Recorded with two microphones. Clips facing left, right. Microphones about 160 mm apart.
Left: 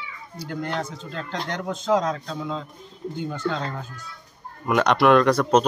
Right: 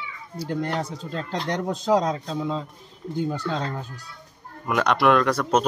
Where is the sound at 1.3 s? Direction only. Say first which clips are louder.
Right 2 dB; 35° right (ahead or behind).